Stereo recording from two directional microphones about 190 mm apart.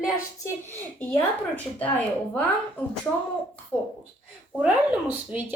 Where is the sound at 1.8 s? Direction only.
5° left (ahead or behind).